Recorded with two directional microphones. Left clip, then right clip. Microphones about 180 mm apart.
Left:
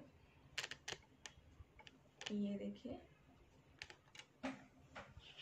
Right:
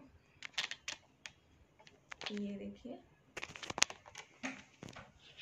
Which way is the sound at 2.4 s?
15° right (ahead or behind).